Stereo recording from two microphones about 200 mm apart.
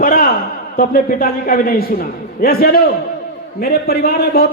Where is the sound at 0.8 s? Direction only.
45° left (ahead or behind).